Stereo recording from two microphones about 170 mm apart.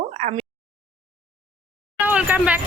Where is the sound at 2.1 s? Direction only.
10° right (ahead or behind).